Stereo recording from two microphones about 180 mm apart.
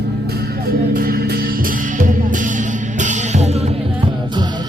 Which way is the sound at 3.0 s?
40° right (ahead or behind).